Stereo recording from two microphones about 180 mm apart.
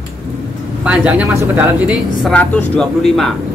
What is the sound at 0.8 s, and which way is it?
Speech, 5° right (ahead or behind).